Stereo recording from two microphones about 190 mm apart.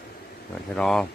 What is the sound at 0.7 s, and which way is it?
Speech, 5° left (ahead or behind).